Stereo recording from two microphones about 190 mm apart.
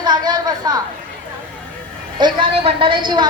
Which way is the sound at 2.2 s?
25° right (ahead or behind).